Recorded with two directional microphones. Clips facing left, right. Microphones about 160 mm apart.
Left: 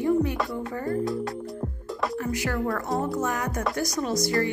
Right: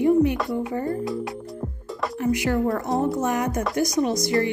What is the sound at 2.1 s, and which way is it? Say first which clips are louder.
Music: right 9 dB; 20° right (ahead or behind).